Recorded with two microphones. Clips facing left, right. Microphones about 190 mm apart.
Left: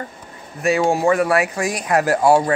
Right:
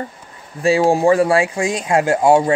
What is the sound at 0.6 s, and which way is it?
Speech, 30° right (ahead or behind).